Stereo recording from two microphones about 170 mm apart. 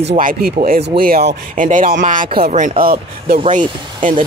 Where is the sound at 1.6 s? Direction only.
50° right (ahead or behind).